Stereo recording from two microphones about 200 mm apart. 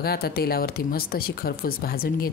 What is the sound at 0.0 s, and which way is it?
Speech, 50° left (ahead or behind).